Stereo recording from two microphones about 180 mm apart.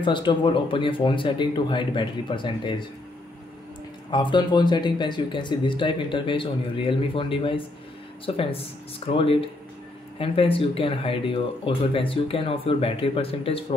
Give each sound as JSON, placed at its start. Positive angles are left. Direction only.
{"t": 0.0, "sound": "speech", "side_deg": 25}
{"t": 4.1, "sound": "speech", "side_deg": 25}